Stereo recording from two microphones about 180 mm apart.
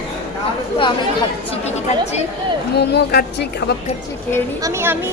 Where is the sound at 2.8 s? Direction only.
60° left (ahead or behind).